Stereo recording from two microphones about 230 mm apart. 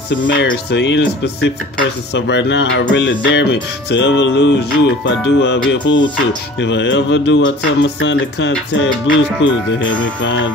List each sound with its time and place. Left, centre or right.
0.1 s speech: left